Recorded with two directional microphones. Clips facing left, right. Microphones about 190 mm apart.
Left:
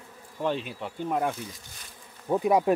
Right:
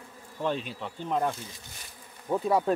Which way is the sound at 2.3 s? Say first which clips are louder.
Left 3 dB; 15° left (ahead or behind).